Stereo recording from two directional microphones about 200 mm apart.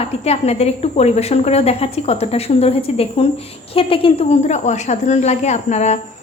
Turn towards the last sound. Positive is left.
turn(degrees=35)  # may be behind; listen again after turning